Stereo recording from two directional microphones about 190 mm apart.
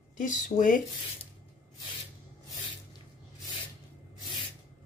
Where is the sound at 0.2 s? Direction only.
45° left (ahead or behind).